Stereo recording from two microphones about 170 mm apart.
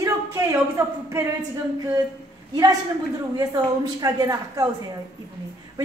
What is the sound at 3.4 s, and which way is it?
A woman's voice, 20° right (ahead or behind).